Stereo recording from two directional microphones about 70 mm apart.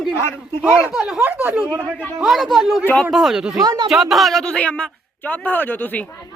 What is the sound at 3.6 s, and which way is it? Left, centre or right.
Speech, right.